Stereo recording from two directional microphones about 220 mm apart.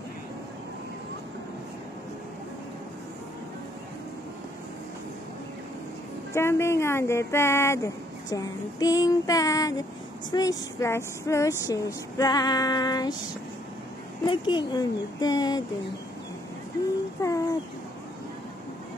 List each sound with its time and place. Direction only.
6.3 s speech: 10° left (ahead or behind)
14.2 s speech: 20° left (ahead or behind)
17.2 s a sound: 15° left (ahead or behind)